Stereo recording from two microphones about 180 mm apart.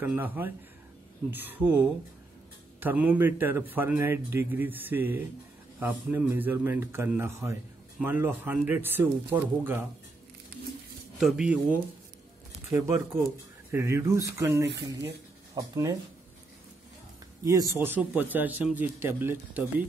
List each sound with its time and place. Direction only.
0.0 s a man's voice: 10° right (ahead or behind)
11.1 s a man's voice: 5° right (ahead or behind)
17.5 s a man's voice: 15° right (ahead or behind)